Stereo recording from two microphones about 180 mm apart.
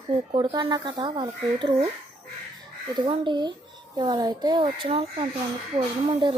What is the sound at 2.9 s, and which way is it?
Speech, 30° right (ahead or behind).